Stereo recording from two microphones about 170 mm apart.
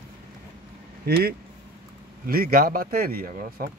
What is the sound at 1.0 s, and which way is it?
A man's voice, 65° right (ahead or behind).